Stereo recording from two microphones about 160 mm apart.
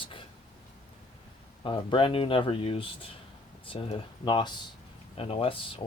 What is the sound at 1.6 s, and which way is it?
Speech, 35° left (ahead or behind).